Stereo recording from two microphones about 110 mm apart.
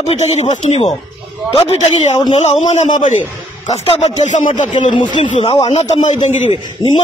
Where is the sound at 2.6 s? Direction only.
90° left.